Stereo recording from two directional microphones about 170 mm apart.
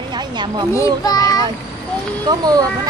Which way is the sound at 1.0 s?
25° left (ahead or behind).